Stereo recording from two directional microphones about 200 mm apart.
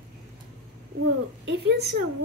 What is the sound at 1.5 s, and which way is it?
Speech, 55° right (ahead or behind).